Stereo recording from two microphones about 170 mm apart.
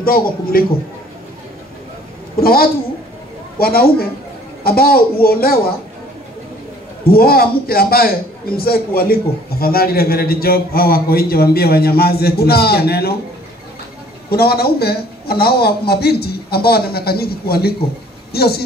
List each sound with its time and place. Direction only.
0.0 s a man's voice: 60° left (ahead or behind)
2.4 s a man's voice: 60° left (ahead or behind)
7.1 s a man's voice: 60° left (ahead or behind)
14.3 s a man's voice: 65° left (ahead or behind)